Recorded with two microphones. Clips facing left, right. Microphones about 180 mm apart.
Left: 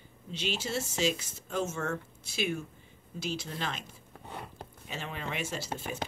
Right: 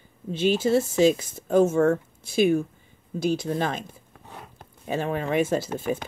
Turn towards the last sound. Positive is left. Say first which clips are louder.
# right 11 dB
turn(degrees=-50)  # may be behind; listen again after turning